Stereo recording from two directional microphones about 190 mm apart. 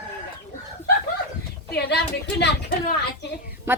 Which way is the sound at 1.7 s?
60° left (ahead or behind).